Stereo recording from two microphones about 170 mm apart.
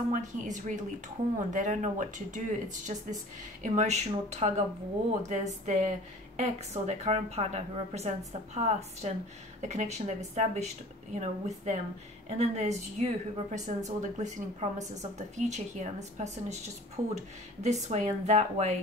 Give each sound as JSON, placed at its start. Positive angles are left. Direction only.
{"t": 0.1, "sound": "a woman's voice", "side_deg": -45}